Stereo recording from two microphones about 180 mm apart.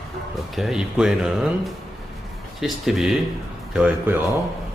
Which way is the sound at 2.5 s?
Centre (ahead or behind).